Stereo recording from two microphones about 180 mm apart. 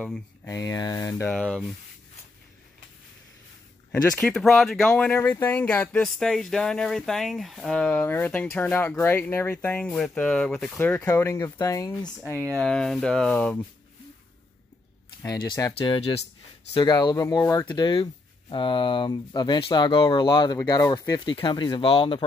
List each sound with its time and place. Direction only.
0.5 s speech: 20° left (ahead or behind)
1.3 s speech: centre (ahead or behind)
3.9 s speech: 5° left (ahead or behind); by 12.1 s 20° left (ahead or behind)
12.3 s speech: 15° right (ahead or behind)
12.5 s speech: 5° left (ahead or behind)
15.2 s speech: 20° left (ahead or behind)